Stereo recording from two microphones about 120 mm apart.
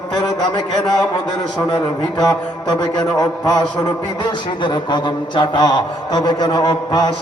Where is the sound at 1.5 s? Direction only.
30° left (ahead or behind).